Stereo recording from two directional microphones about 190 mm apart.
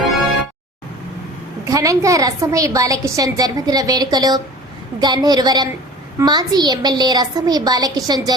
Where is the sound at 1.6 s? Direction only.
15° right (ahead or behind).